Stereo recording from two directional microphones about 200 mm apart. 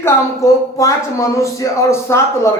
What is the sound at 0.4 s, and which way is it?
Speech, 15° left (ahead or behind).